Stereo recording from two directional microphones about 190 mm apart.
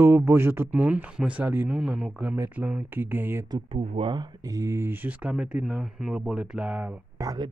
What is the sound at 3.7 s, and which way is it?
Speech, 30° right (ahead or behind).